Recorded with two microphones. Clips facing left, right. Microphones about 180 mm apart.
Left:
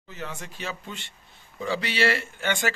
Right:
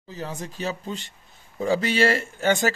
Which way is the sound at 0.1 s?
35° right (ahead or behind).